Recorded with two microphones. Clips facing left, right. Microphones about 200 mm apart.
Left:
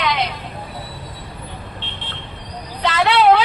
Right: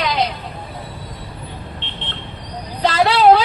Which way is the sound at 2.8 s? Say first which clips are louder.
Right 2 dB; 35° right (ahead or behind).